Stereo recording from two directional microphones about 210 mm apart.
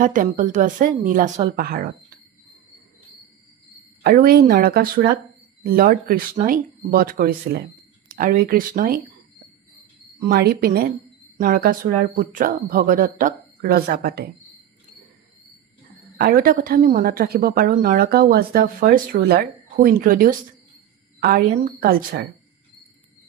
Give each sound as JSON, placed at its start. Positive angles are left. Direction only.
{"t": 0.0, "sound": "a woman's voice", "side_deg": -40}
{"t": 4.0, "sound": "a woman's voice", "side_deg": -45}
{"t": 10.2, "sound": "a woman's voice", "side_deg": -45}
{"t": 16.2, "sound": "a woman's voice", "side_deg": -45}